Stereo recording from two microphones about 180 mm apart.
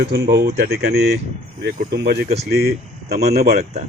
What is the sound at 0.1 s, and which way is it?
Speech, 65° right (ahead or behind).